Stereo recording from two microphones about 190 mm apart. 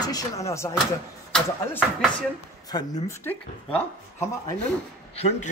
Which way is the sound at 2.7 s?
15° left (ahead or behind).